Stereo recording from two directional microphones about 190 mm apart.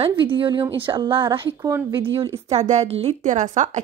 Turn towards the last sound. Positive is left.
turn(degrees=-40)  # may be behind; listen again after turning